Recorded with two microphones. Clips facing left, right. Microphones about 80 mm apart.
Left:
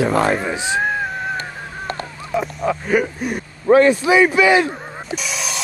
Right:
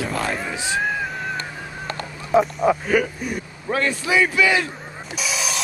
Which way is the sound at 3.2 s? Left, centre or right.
Left.